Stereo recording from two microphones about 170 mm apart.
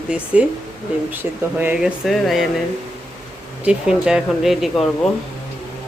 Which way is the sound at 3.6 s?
5° right (ahead or behind).